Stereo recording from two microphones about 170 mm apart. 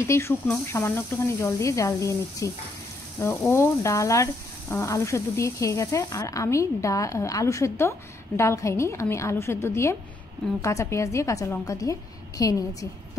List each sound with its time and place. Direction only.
0.0 s speech: 15° left (ahead or behind)